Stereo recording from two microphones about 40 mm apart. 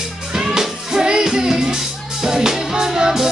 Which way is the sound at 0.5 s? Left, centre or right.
Centre.